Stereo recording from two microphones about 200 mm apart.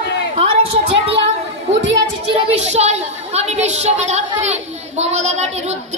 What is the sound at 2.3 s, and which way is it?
A woman's voice, 35° right (ahead or behind).